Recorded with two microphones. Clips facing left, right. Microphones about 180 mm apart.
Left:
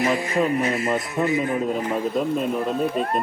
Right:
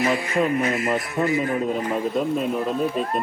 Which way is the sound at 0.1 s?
35° left (ahead or behind).